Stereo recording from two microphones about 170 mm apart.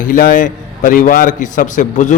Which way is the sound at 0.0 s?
55° left (ahead or behind).